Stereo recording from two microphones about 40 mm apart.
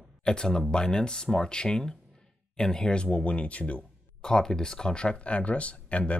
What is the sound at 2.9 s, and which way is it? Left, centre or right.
Speech, left.